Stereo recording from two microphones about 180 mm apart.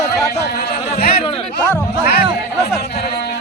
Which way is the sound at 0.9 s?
60° left (ahead or behind).